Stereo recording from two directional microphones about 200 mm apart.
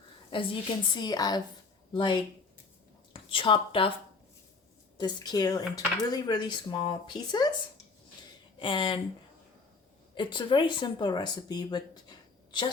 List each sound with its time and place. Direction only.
0.3 s a woman's voice: 25° left (ahead or behind)
4.9 s speech: 20° left (ahead or behind)
8.5 s speech: 25° left (ahead or behind)
10.2 s speech: 25° left (ahead or behind)